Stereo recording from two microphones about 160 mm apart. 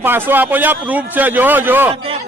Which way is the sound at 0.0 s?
15° right (ahead or behind).